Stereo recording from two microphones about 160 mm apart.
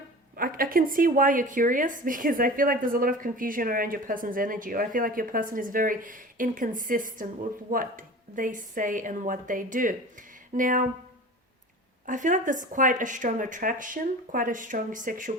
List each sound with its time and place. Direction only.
0.3 s a woman's voice: 65° right (ahead or behind)
12.0 s a woman's voice: 55° right (ahead or behind)